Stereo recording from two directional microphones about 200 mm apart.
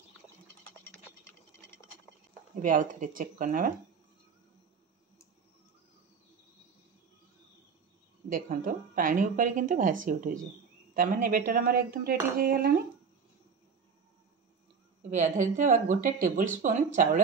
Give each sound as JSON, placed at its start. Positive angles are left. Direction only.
{"t": 2.6, "sound": "speech", "side_deg": -40}
{"t": 8.3, "sound": "speech", "side_deg": -40}
{"t": 15.0, "sound": "speech", "side_deg": -35}